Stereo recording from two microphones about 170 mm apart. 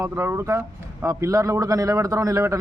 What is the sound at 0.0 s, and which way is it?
A man's voice, 15° right (ahead or behind).